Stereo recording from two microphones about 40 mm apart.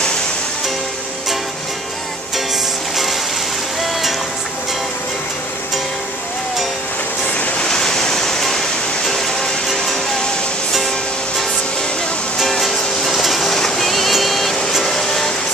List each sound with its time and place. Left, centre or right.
2.3 s music: centre
7.3 s a sound: left
7.6 s waterfall: centre
12.4 s music: centre
14.9 s vehicle: centre